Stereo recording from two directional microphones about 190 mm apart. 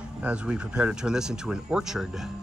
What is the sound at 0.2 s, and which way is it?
Speech, 5° right (ahead or behind).